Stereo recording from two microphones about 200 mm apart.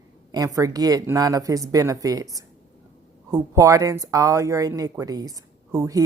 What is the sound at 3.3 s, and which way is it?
Speech, 15° right (ahead or behind).